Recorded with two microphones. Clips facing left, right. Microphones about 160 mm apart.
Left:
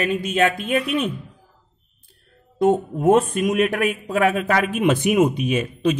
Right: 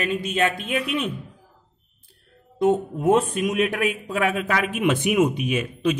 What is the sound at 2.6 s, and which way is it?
A man's voice, 50° left (ahead or behind).